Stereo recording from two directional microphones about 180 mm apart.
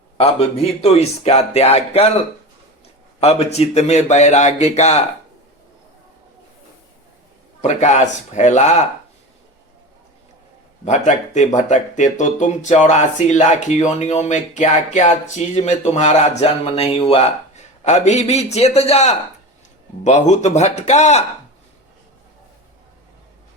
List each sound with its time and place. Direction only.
0.2 s speech: 35° left (ahead or behind)
3.2 s speech: 35° left (ahead or behind)
7.6 s speech: 40° left (ahead or behind)
10.8 s speech: 40° left (ahead or behind)